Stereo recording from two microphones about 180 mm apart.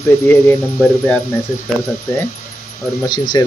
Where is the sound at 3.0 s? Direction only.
20° left (ahead or behind).